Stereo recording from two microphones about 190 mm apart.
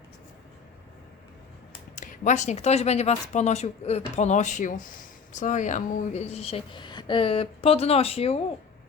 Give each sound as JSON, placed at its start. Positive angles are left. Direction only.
{"t": 2.0, "sound": "a woman's voice", "side_deg": 40}